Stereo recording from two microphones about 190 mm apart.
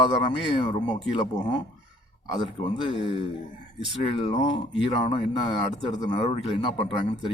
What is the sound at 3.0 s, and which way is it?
Speech, 25° right (ahead or behind).